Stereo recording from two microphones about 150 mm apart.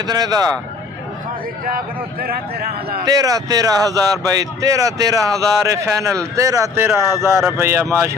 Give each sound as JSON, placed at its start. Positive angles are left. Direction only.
{"t": 0.0, "sound": "speech", "side_deg": -25}
{"t": 3.1, "sound": "speech", "side_deg": -25}